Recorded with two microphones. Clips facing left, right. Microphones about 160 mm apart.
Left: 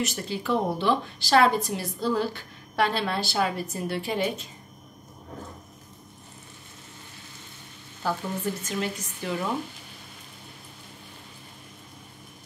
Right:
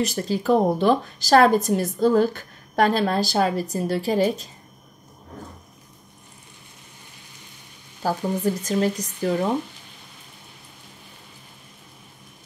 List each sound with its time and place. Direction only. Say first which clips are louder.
0.0 s speech: right 6 dB; 40° right (ahead or behind)
8.0 s speech: right 6 dB; 40° right (ahead or behind)